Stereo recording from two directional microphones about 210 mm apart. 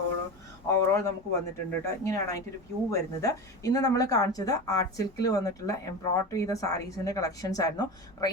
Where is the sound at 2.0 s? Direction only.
15° left (ahead or behind).